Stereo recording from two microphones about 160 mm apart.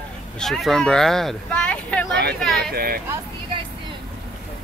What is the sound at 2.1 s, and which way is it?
Speech, 90° right.